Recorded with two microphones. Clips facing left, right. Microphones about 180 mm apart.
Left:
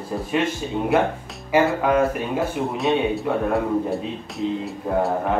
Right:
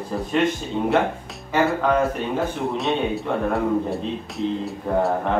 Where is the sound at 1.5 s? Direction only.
10° left (ahead or behind).